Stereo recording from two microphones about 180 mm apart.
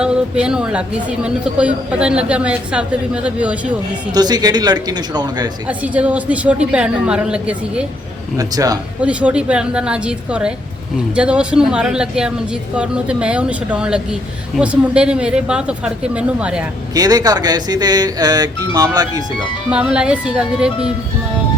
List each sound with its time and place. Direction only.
0.0 s a woman's voice: 5° right (ahead or behind)
4.1 s speech: 20° right (ahead or behind)
5.6 s a woman's voice: 10° right (ahead or behind)
8.4 s speech: 20° right (ahead or behind)
9.0 s speech: 5° right (ahead or behind)
16.9 s speech: 20° right (ahead or behind)
19.7 s speech: 5° right (ahead or behind)